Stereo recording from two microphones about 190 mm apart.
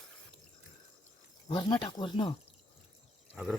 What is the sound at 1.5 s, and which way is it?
Speech, 25° left (ahead or behind).